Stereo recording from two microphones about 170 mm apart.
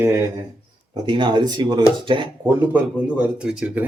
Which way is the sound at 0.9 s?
30° right (ahead or behind).